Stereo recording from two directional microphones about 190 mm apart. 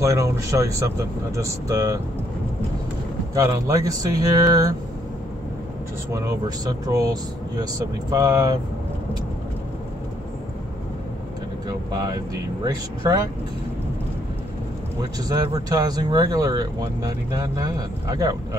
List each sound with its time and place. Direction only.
0.0 s speech: 15° right (ahead or behind)
3.3 s speech: 15° right (ahead or behind)
6.1 s speech: 20° right (ahead or behind)
11.9 s speech: 20° right (ahead or behind)
15.0 s speech: 20° right (ahead or behind)